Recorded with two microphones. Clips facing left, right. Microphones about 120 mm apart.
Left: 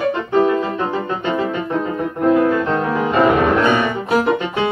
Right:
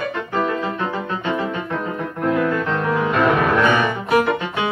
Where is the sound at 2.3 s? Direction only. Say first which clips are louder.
Left 5 dB; 30° left (ahead or behind).